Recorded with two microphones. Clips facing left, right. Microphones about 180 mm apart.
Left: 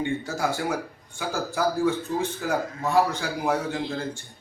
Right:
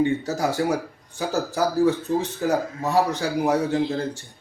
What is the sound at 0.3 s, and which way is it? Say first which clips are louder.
Speech: right 4 dB; 40° right (ahead or behind).